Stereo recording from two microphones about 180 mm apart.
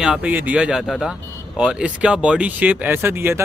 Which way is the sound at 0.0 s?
5° right (ahead or behind).